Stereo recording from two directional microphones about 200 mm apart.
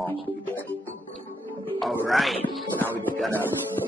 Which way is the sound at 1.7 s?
Centre (ahead or behind).